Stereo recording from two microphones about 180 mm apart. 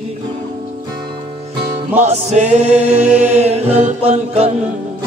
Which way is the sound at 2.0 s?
40° right (ahead or behind).